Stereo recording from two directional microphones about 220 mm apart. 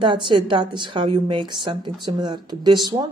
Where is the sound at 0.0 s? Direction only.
20° right (ahead or behind).